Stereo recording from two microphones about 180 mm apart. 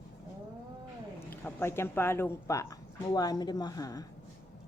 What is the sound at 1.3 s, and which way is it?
Speech, 10° left (ahead or behind).